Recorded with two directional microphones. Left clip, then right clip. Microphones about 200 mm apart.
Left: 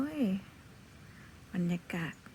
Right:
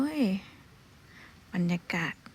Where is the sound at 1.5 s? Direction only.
10° right (ahead or behind).